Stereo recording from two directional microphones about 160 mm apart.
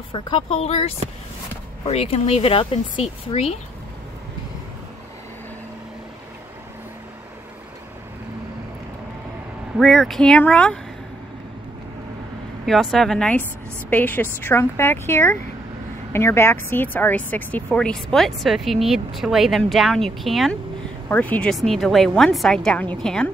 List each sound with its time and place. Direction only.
0.1 s speech: 30° left (ahead or behind)
9.8 s a woman's voice: centre (ahead or behind)
12.6 s a woman's voice: centre (ahead or behind)